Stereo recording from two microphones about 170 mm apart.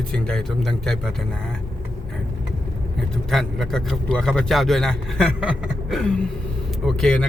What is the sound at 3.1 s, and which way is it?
A man's voice, centre (ahead or behind).